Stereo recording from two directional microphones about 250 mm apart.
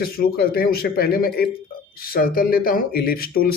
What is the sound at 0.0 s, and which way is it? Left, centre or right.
Speech, left.